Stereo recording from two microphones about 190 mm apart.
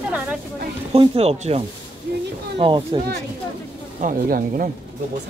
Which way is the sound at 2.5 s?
25° right (ahead or behind).